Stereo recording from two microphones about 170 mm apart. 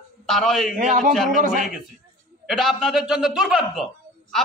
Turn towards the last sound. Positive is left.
turn(degrees=0)  # may be behind; listen again after turning